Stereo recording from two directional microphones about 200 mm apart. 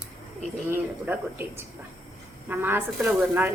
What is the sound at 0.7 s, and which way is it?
A woman's voice, 10° right (ahead or behind).